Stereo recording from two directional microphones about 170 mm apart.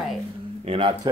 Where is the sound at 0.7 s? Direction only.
35° right (ahead or behind).